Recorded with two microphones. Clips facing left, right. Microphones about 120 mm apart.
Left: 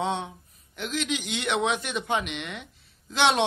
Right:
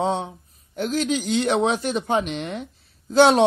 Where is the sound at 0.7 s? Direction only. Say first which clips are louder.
Right 7 dB; 40° right (ahead or behind).